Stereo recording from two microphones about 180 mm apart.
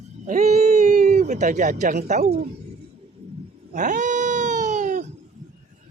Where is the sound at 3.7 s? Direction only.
45° right (ahead or behind).